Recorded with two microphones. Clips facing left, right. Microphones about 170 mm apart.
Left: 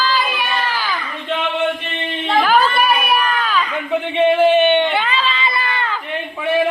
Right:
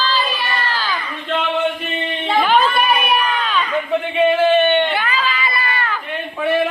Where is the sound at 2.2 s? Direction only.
Centre (ahead or behind).